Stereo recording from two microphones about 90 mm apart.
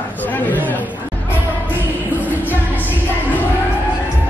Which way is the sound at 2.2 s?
20° right (ahead or behind).